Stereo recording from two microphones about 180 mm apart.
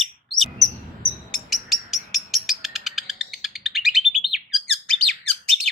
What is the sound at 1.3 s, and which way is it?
Bird, centre (ahead or behind).